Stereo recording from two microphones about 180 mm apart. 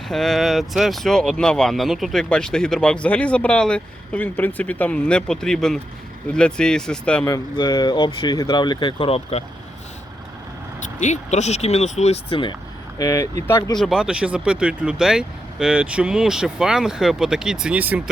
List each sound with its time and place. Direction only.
0.1 s speech: centre (ahead or behind)
7.3 s speech: 20° left (ahead or behind)
11.0 s speech: 40° left (ahead or behind); by 13.7 s 20° left (ahead or behind)
13.7 s speech: centre (ahead or behind)